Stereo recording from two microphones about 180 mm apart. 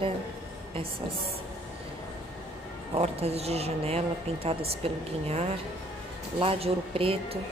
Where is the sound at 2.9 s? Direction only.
35° right (ahead or behind).